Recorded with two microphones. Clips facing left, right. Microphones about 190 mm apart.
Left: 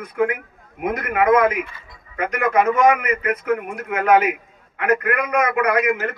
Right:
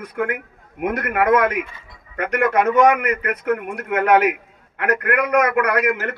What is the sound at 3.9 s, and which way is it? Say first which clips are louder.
Speech: right 1 dB; 70° right (ahead or behind).